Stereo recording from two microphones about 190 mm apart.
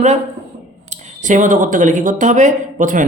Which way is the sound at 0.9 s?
40° right (ahead or behind).